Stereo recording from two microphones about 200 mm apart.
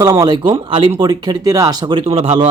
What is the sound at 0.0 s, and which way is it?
Speech, 20° right (ahead or behind).